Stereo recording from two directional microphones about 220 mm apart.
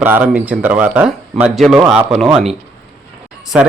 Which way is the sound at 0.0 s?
10° right (ahead or behind).